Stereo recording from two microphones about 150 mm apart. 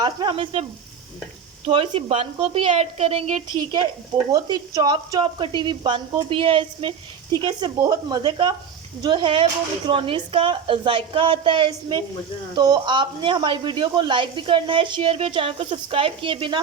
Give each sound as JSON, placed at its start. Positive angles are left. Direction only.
{"t": 0.0, "sound": "speech", "side_deg": -30}
{"t": 1.6, "sound": "speech", "side_deg": -35}
{"t": 4.3, "sound": "speech", "side_deg": -25}